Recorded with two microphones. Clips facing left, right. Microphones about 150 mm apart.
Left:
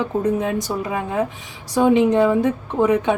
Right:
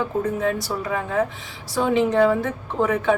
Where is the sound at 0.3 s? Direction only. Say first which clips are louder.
Left 2 dB; 20° left (ahead or behind).